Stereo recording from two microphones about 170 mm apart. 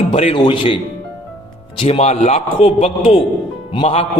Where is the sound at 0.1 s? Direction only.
35° left (ahead or behind).